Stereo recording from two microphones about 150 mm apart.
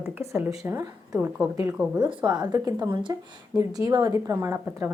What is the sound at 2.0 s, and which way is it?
Speech, 30° right (ahead or behind).